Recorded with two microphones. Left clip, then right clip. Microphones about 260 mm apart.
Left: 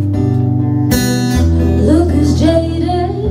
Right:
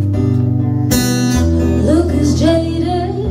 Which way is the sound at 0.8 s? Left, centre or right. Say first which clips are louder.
Right 2 dB; left.